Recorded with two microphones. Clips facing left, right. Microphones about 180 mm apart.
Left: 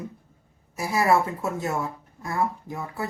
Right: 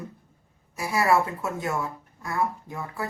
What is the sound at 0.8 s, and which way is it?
A woman's voice, 25° left (ahead or behind).